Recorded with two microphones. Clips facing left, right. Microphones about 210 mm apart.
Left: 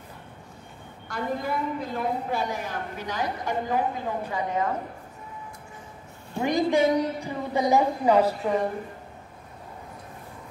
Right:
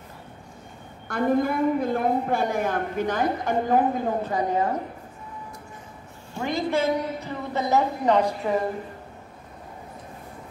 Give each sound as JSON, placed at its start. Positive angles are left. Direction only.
{"t": 1.0, "sound": "a woman's voice", "side_deg": -55}
{"t": 4.3, "sound": "a woman's voice", "side_deg": -35}
{"t": 6.3, "sound": "a woman's voice", "side_deg": 15}